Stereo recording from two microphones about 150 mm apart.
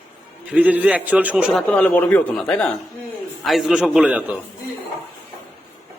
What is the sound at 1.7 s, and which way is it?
A man's voice, 10° left (ahead or behind).